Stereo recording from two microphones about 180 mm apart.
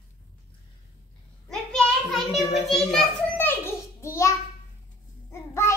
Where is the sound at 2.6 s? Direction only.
5° left (ahead or behind).